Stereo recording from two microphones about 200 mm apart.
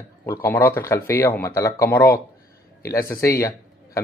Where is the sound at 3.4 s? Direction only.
15° left (ahead or behind).